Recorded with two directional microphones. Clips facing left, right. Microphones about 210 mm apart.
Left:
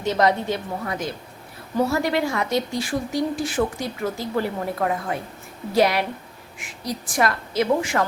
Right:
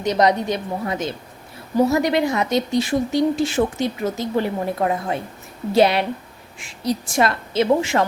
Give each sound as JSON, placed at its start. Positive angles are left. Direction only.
{"t": 0.0, "sound": "a woman's voice", "side_deg": -15}